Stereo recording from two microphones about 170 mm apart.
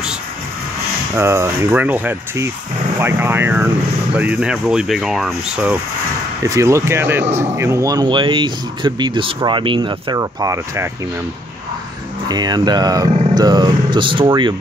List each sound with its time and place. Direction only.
1.1 s speech: 15° right (ahead or behind)
6.4 s speech: 20° right (ahead or behind)
12.3 s speech: 25° right (ahead or behind)